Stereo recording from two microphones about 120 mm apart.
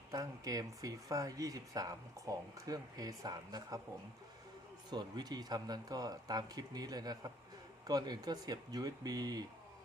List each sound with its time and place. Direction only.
0.1 s speech: 30° right (ahead or behind)
4.9 s speech: 35° right (ahead or behind)